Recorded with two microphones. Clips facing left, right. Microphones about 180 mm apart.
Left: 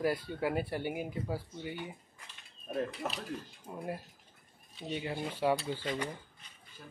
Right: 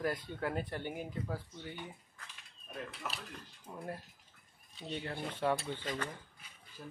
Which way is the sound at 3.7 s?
15° left (ahead or behind).